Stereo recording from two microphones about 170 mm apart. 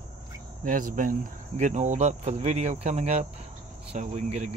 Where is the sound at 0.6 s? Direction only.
50° right (ahead or behind).